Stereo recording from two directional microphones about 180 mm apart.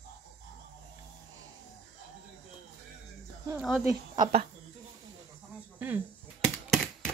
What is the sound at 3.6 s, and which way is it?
Speech, centre (ahead or behind).